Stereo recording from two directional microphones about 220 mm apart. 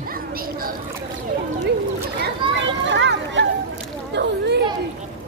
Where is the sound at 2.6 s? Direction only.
55° right (ahead or behind).